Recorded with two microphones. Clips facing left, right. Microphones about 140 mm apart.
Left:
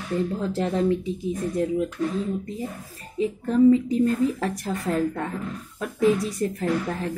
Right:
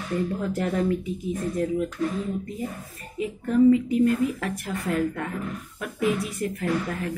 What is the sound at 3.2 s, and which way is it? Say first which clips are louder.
A woman's voice: left 1 dB; 30° left (ahead or behind).